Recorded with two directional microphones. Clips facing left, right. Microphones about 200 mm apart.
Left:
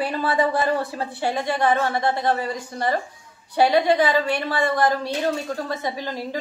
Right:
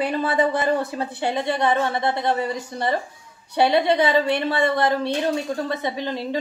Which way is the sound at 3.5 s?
25° right (ahead or behind).